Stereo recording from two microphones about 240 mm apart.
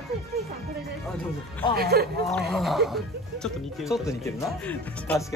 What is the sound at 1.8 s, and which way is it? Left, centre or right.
Speech, right.